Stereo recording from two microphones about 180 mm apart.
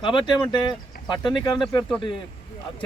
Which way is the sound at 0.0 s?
25° left (ahead or behind).